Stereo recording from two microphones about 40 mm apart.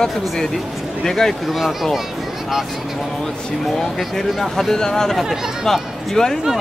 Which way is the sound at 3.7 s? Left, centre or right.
Centre.